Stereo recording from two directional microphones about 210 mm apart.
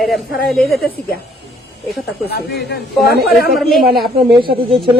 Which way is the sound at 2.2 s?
50° left (ahead or behind).